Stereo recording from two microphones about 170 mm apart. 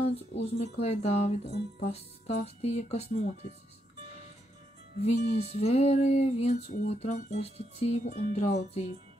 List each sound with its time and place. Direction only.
0.0 s music: 40° left (ahead or behind)
5.0 s music: 40° left (ahead or behind)